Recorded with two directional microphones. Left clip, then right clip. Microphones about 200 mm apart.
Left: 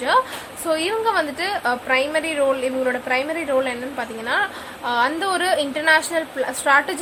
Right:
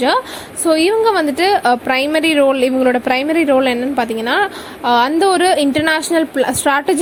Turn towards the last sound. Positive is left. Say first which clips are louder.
# right 3 dB
turn(degrees=-35)  # may be behind; listen again after turning